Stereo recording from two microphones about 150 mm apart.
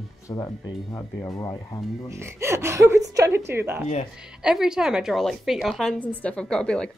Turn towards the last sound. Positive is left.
turn(degrees=5)  # may be behind; listen again after turning